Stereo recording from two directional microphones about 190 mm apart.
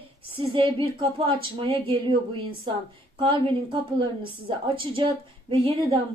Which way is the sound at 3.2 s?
25° right (ahead or behind).